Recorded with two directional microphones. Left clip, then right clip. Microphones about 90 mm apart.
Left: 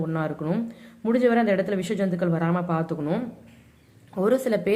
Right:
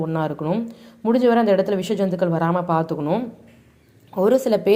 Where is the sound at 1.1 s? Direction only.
20° right (ahead or behind).